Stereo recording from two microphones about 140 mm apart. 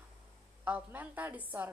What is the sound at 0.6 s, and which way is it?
A woman's voice, 15° right (ahead or behind).